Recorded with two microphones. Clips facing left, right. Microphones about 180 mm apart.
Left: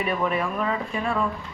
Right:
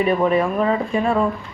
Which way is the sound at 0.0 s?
35° right (ahead or behind).